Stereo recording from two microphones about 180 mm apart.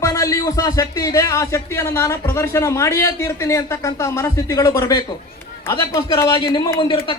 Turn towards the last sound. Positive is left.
turn(degrees=30)  # may be behind; listen again after turning